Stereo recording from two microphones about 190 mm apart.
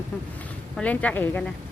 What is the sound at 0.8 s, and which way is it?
Speech, 5° left (ahead or behind).